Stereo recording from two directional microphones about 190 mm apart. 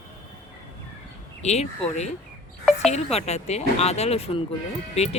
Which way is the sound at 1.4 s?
35° left (ahead or behind).